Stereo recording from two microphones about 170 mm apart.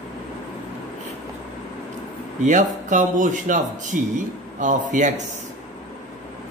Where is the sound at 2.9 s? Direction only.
45° right (ahead or behind).